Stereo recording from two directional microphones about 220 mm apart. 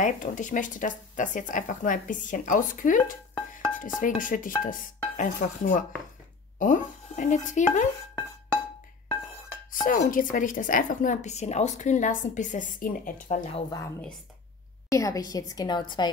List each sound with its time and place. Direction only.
0.0 s a woman's voice: 35° left (ahead or behind)
4.0 s a woman's voice: 35° left (ahead or behind)
9.7 s a woman's voice: 40° left (ahead or behind)
13.5 s speech: 25° left (ahead or behind)
14.9 s a woman's voice: 15° left (ahead or behind)